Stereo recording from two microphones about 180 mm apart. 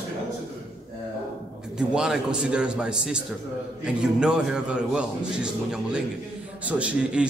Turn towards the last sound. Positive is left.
turn(degrees=-5)  # may be behind; listen again after turning